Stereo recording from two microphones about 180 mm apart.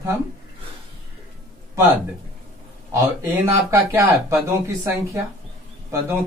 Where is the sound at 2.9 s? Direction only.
15° right (ahead or behind).